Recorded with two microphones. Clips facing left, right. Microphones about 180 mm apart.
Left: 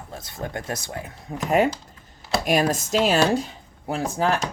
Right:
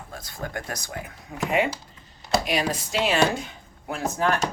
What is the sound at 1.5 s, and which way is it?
Speech, 40° left (ahead or behind).